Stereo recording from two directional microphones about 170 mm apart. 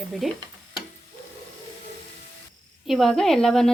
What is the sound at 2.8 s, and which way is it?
Speech, centre (ahead or behind).